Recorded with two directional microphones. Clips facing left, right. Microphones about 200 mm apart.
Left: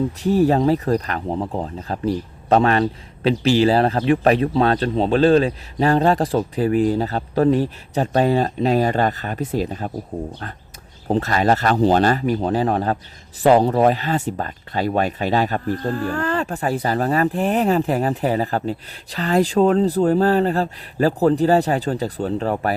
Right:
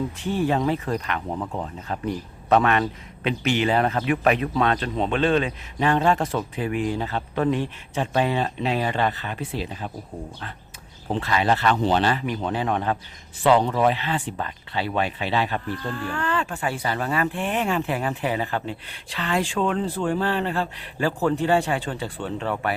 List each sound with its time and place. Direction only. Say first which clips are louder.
0.2 s speech: left 7 dB; 40° left (ahead or behind)
11.1 s speech: left 5 dB; 45° left (ahead or behind)